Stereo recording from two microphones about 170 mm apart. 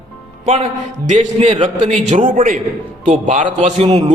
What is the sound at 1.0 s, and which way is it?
A man's voice, 45° right (ahead or behind).